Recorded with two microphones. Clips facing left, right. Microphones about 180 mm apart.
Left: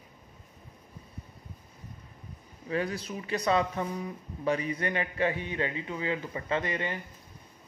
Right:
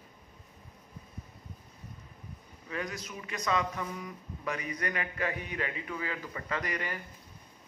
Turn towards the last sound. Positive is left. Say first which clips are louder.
# left 4 dB
turn(degrees=25)  # may be behind; listen again after turning